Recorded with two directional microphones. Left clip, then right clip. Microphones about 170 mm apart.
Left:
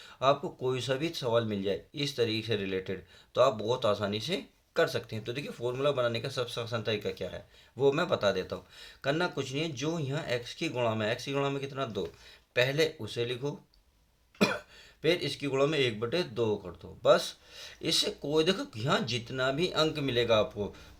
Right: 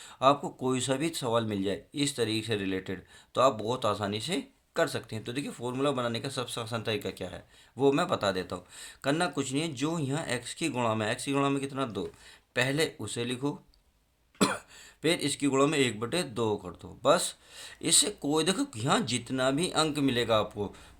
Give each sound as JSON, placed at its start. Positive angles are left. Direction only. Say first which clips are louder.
{"t": 0.0, "sound": "speech", "louder": "right 3 dB", "side_deg": -30}
{"t": 14.3, "sound": "cough", "louder": "even", "side_deg": -30}
{"t": 15.0, "sound": "speech", "louder": "right 1 dB", "side_deg": -30}